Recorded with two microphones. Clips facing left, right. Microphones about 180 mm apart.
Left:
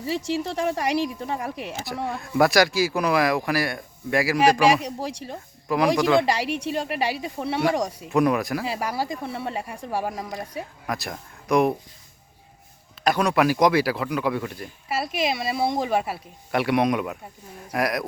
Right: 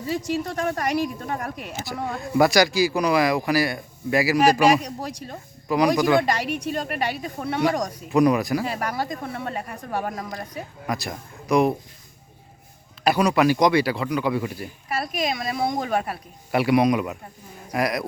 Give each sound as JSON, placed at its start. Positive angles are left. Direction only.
{"t": 0.4, "sound": "speech", "side_deg": 10}
{"t": 4.9, "sound": "speech", "side_deg": 30}
{"t": 5.3, "sound": "speech", "side_deg": 0}
{"t": 6.4, "sound": "a woman's voice", "side_deg": 30}
{"t": 6.7, "sound": "speech", "side_deg": 10}
{"t": 13.1, "sound": "speech", "side_deg": -5}